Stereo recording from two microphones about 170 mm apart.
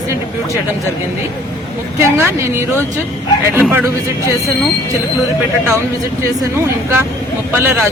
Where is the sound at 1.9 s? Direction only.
15° right (ahead or behind).